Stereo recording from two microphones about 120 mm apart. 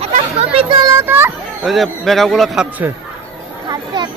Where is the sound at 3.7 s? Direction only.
35° right (ahead or behind).